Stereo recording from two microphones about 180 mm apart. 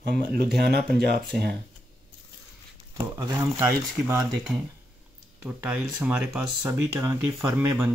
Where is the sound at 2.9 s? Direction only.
15° right (ahead or behind).